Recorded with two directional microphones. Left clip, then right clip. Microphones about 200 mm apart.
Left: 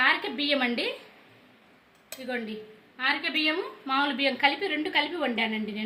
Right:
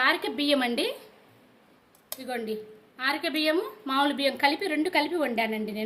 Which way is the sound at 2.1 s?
60° right (ahead or behind).